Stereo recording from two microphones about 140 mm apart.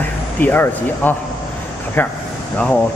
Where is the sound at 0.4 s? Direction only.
15° left (ahead or behind).